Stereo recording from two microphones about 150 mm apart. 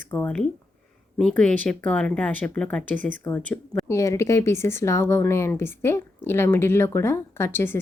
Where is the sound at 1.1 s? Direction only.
5° left (ahead or behind).